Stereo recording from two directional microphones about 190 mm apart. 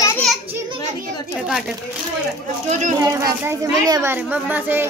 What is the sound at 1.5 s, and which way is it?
Speech, centre (ahead or behind).